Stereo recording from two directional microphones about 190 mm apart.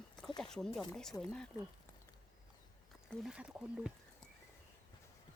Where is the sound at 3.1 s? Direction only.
Centre (ahead or behind).